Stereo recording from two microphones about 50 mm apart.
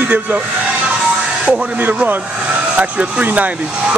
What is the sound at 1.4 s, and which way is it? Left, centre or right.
Speech, right.